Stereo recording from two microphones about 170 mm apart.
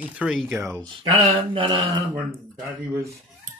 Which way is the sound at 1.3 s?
30° right (ahead or behind).